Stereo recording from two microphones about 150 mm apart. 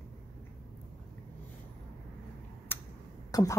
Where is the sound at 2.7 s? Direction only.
15° left (ahead or behind).